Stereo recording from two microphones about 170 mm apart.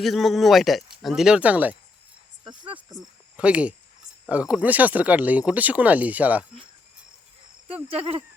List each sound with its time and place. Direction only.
0.0 s speech: centre (ahead or behind)
2.4 s speech: 30° right (ahead or behind)
3.3 s speech: 5° right (ahead or behind)
7.7 s speech: 35° right (ahead or behind)